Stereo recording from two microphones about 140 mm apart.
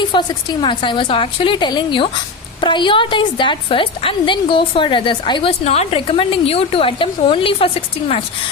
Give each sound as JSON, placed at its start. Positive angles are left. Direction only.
{"t": 0.1, "sound": "a woman's voice", "side_deg": 30}